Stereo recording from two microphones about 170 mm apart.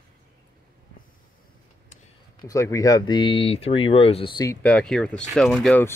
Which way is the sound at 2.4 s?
20° left (ahead or behind).